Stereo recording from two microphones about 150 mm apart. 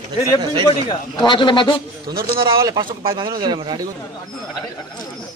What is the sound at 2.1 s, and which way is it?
Speech, 90° right.